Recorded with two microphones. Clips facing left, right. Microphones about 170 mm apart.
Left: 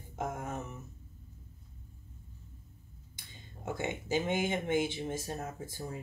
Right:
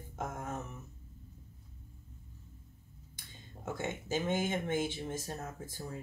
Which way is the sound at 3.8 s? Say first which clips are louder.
Left 3 dB; 15° left (ahead or behind).